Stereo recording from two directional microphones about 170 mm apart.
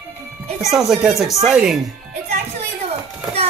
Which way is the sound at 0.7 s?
5° right (ahead or behind).